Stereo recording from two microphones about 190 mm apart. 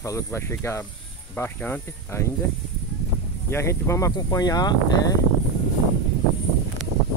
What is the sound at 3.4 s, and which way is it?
Speech, 15° left (ahead or behind).